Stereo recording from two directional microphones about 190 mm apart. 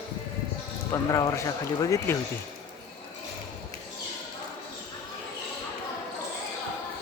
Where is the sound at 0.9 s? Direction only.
15° left (ahead or behind).